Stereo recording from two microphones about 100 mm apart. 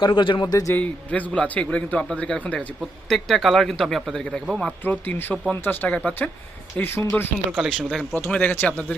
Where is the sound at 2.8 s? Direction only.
Centre (ahead or behind).